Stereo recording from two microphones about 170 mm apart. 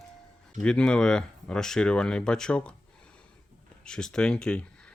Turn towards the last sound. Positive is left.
turn(degrees=5)  # may be behind; listen again after turning